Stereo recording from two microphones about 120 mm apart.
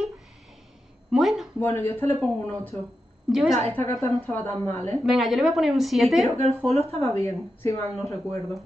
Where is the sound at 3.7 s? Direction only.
20° left (ahead or behind).